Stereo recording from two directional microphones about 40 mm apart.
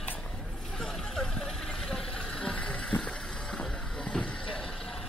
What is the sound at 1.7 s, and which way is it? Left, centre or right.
Vehicle, centre.